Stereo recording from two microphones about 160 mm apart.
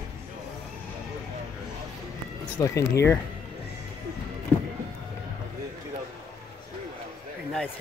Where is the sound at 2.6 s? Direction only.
20° left (ahead or behind).